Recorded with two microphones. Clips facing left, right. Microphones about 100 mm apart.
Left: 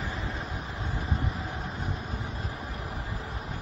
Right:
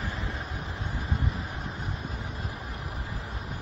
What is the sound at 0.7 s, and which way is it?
Vehicle, 30° left (ahead or behind).